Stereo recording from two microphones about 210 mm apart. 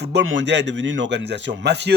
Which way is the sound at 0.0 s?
55° right (ahead or behind).